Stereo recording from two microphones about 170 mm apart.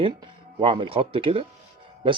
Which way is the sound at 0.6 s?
30° right (ahead or behind).